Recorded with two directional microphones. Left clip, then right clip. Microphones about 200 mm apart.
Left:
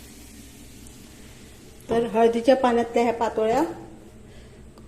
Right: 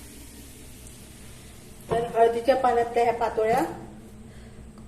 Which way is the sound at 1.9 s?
35° left (ahead or behind).